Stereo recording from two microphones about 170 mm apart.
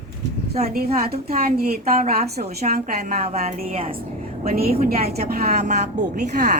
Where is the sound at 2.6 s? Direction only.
45° right (ahead or behind).